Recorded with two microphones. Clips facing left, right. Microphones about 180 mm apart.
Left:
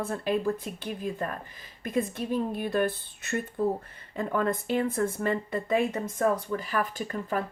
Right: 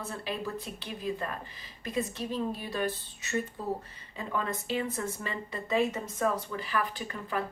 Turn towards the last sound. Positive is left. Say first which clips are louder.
# left 4 dB
turn(degrees=45)  # may be behind; listen again after turning